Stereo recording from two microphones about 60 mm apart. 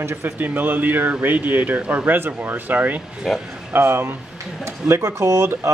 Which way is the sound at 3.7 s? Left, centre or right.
Right.